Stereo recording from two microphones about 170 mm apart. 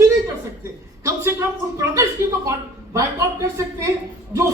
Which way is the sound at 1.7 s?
15° right (ahead or behind).